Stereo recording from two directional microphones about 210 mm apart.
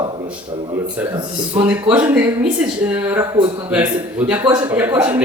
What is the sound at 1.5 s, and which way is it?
Speech, 5° right (ahead or behind).